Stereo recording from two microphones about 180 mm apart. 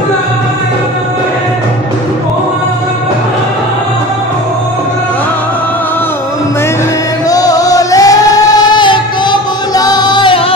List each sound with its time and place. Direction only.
7.2 s singing: 20° left (ahead or behind)